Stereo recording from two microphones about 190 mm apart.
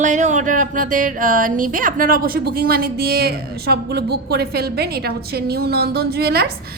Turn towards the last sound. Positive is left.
turn(degrees=-55)  # may be behind; listen again after turning